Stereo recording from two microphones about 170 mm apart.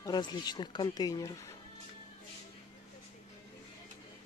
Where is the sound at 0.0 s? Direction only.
25° left (ahead or behind).